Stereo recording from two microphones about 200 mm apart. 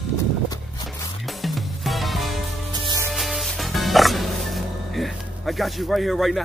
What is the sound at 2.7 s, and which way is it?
Music, 20° right (ahead or behind).